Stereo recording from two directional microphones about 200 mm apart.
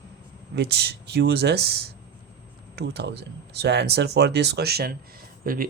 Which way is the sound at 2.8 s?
55° right (ahead or behind).